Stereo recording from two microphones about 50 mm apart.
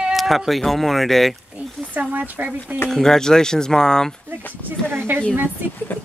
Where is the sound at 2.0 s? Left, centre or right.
Right.